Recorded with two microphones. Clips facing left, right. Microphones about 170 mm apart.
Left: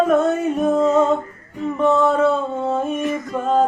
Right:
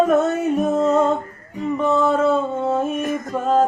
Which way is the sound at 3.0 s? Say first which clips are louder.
Left 1 dB; 50° right (ahead or behind).